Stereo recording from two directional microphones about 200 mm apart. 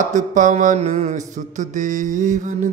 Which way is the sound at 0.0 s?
40° right (ahead or behind).